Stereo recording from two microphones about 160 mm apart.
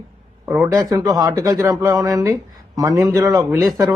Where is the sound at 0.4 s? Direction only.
15° right (ahead or behind).